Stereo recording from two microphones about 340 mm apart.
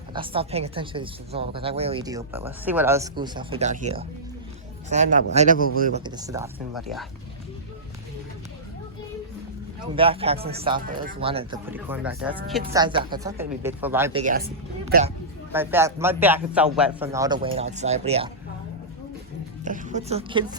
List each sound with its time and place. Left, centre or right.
0.1 s a man's voice: centre
6.0 s speech: centre
9.8 s speech: centre
14.2 s a man's voice: right
15.5 s speech: centre
19.6 s speech: right